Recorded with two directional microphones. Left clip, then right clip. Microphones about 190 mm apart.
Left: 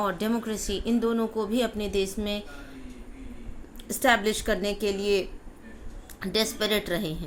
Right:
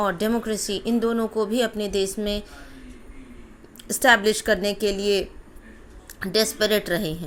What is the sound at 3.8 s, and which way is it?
A woman's voice, 25° right (ahead or behind).